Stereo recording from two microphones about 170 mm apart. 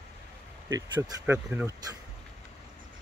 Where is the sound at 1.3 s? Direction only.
10° right (ahead or behind).